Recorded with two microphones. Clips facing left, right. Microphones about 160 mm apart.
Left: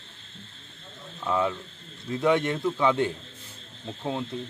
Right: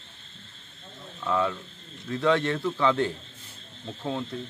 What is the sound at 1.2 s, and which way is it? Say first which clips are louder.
A man's voice: even; 15° left (ahead or behind).